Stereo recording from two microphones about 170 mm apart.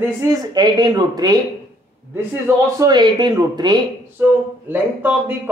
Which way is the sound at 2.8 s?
25° right (ahead or behind).